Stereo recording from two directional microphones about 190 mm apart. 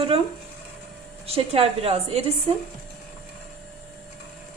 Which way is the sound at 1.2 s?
30° right (ahead or behind).